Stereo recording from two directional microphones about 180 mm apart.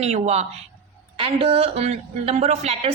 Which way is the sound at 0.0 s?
35° right (ahead or behind).